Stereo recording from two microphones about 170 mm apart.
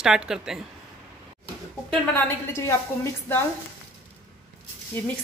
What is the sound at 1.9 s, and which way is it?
A woman's voice, 15° left (ahead or behind).